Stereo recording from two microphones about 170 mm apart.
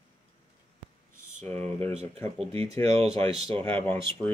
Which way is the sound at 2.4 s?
35° right (ahead or behind).